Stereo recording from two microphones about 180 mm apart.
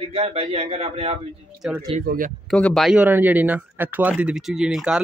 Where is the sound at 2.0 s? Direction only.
50° right (ahead or behind).